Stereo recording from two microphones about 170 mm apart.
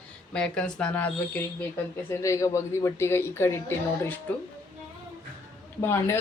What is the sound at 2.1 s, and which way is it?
A woman's voice, 20° left (ahead or behind).